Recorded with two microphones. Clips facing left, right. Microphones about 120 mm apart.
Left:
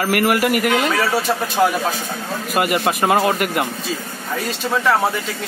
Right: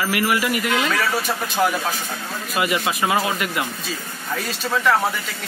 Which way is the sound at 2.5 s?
55° left (ahead or behind).